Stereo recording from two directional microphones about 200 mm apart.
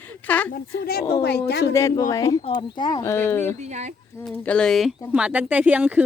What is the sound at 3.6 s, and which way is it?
Speech, 35° right (ahead or behind).